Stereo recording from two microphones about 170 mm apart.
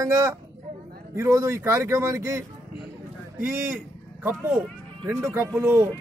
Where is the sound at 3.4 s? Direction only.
15° right (ahead or behind).